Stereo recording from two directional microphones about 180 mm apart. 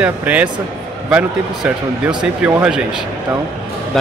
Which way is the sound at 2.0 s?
5° right (ahead or behind).